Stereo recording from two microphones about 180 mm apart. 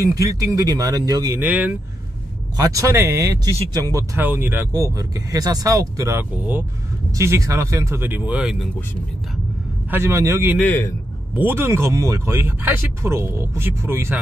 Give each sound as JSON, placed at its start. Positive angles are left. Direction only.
{"t": 0.0, "sound": "speech", "side_deg": -20}
{"t": 2.5, "sound": "speech", "side_deg": -20}
{"t": 9.8, "sound": "speech", "side_deg": -15}
{"t": 10.6, "sound": "a man's voice", "side_deg": 10}
{"t": 11.3, "sound": "speech", "side_deg": -10}